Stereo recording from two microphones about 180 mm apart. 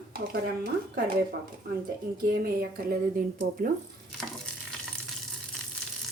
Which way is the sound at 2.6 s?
55° right (ahead or behind).